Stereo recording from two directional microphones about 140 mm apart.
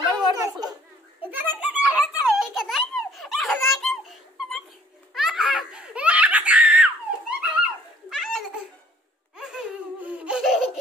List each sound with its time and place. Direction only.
0.3 s a sound: 25° right (ahead or behind)
1.2 s a sound: 15° right (ahead or behind)
1.8 s giggle: 10° right (ahead or behind)
5.1 s baby laughter: centre (ahead or behind)
8.1 s belly laugh: centre (ahead or behind)
9.4 s laughter: 5° right (ahead or behind)